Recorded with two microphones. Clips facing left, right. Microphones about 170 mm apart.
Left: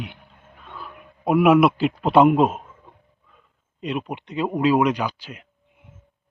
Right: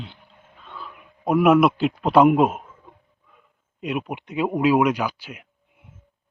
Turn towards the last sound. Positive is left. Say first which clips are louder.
# even
turn(degrees=-5)  # may be behind; listen again after turning